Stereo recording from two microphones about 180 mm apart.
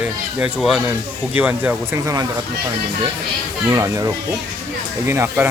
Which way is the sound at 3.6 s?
15° right (ahead or behind).